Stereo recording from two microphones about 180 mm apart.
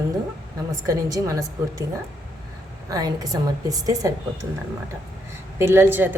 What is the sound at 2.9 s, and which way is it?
A woman's voice, 20° right (ahead or behind).